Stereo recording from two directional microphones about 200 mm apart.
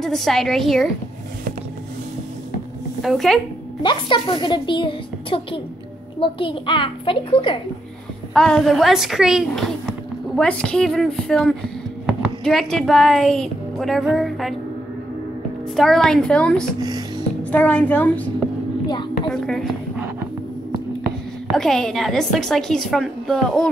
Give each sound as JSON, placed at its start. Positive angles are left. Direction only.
{"t": 0.0, "sound": "a woman's voice", "side_deg": 0}
{"t": 3.0, "sound": "speech", "side_deg": 0}
{"t": 3.8, "sound": "a woman's voice", "side_deg": 25}
{"t": 8.3, "sound": "a woman's voice", "side_deg": 5}
{"t": 15.7, "sound": "a woman's voice", "side_deg": 0}
{"t": 19.3, "sound": "a woman's voice", "side_deg": 0}
{"t": 21.0, "sound": "a woman's voice", "side_deg": 0}